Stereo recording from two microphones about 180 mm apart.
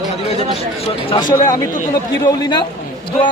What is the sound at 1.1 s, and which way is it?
Speech, 20° left (ahead or behind).